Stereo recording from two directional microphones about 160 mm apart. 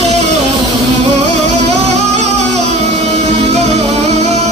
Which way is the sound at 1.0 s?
45° right (ahead or behind).